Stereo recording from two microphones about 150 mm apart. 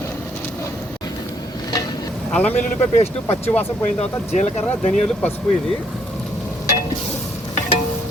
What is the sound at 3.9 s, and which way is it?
Speech, 50° left (ahead or behind).